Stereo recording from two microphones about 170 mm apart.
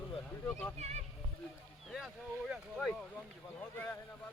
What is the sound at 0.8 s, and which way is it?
Speech, 40° right (ahead or behind).